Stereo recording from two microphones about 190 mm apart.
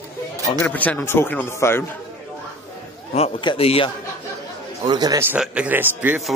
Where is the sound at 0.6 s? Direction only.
10° left (ahead or behind).